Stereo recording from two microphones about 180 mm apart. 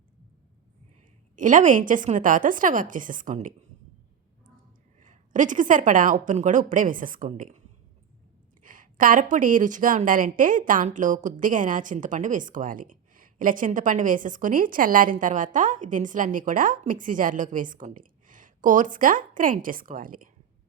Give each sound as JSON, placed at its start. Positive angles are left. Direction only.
{"t": 1.4, "sound": "a woman's voice", "side_deg": -45}
{"t": 4.9, "sound": "a woman's voice", "side_deg": -45}
{"t": 8.6, "sound": "a woman's voice", "side_deg": -50}